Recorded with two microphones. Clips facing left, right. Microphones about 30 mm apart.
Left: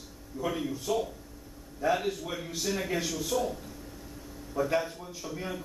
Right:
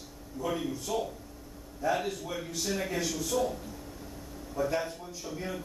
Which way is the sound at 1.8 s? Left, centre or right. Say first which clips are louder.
Left 2 dB; left.